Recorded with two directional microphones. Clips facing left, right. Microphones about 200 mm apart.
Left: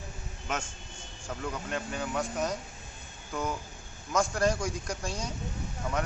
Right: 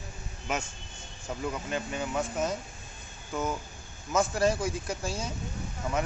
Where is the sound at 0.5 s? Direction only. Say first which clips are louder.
Right 2 dB; 10° right (ahead or behind).